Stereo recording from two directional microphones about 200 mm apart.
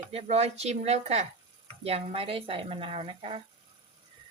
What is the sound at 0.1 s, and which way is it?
Speech, 30° right (ahead or behind).